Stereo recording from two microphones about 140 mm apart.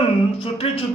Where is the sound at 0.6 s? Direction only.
45° left (ahead or behind).